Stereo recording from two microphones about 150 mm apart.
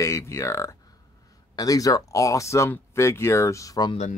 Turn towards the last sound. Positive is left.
turn(degrees=25)  # may be behind; listen again after turning